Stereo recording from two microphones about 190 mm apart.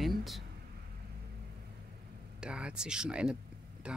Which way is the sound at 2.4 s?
5° right (ahead or behind).